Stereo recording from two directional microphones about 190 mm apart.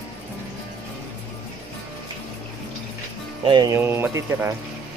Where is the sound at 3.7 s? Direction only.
10° right (ahead or behind).